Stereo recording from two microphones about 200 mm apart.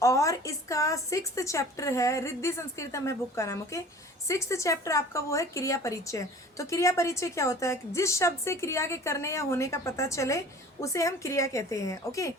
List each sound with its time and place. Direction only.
0.0 s speech: 15° left (ahead or behind)